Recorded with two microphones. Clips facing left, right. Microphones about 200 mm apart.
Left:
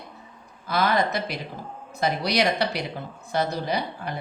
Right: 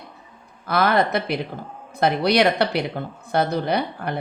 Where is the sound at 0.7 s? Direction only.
60° right (ahead or behind).